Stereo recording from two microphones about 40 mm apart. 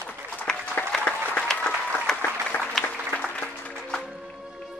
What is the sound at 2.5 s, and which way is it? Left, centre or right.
Applause, left.